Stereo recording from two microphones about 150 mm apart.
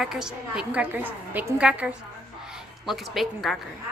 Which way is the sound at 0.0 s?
5° right (ahead or behind).